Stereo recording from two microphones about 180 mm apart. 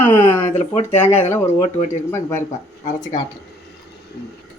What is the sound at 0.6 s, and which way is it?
Speech, 35° left (ahead or behind).